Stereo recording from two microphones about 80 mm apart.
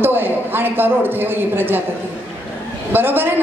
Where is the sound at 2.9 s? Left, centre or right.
Right.